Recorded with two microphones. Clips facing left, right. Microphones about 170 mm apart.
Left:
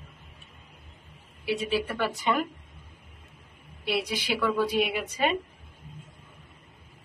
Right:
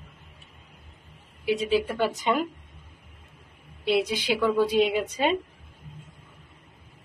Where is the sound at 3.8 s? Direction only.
20° right (ahead or behind).